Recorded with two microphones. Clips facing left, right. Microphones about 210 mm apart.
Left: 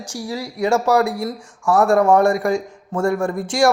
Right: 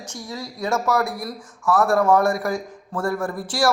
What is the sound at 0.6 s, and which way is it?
Speech, 30° left (ahead or behind).